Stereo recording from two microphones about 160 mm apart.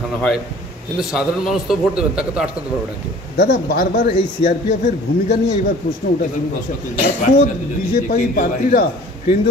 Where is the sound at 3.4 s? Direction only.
60° left (ahead or behind).